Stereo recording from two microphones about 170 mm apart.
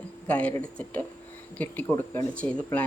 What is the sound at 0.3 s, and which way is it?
Speech, 5° left (ahead or behind).